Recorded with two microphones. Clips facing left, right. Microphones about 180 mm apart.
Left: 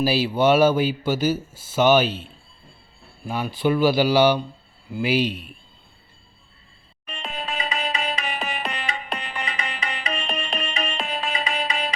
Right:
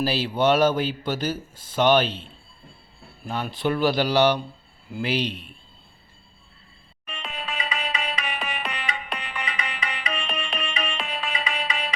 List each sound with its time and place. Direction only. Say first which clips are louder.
0.0 s speech: left 3 dB; 10° left (ahead or behind)
7.1 s music: left 3 dB; 35° left (ahead or behind)